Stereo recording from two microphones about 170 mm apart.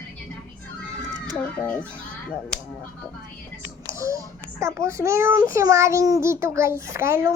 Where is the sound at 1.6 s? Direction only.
10° left (ahead or behind).